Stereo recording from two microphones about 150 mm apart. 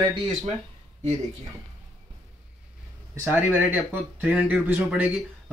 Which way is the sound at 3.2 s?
10° right (ahead or behind).